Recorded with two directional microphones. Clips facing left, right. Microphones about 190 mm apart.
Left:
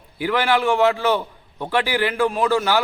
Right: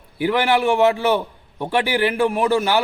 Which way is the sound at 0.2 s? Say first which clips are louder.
Right 2 dB; 15° right (ahead or behind).